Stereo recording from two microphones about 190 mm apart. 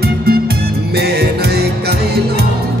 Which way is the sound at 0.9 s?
55° right (ahead or behind).